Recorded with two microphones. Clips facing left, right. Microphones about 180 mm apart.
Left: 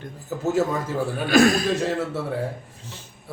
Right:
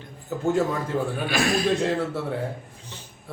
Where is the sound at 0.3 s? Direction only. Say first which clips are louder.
Even; 5° left (ahead or behind).